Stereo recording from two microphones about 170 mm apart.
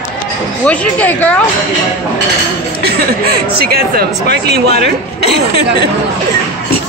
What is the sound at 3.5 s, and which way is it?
Speech, 65° right (ahead or behind).